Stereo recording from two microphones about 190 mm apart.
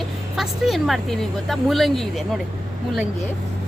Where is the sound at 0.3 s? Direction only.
Centre (ahead or behind).